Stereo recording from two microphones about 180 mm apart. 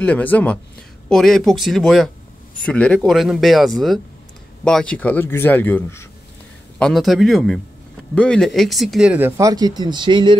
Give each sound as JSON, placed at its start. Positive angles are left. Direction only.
{"t": 0.0, "sound": "speech", "side_deg": 10}
{"t": 6.8, "sound": "speech", "side_deg": 0}
{"t": 9.4, "sound": "speech", "side_deg": -20}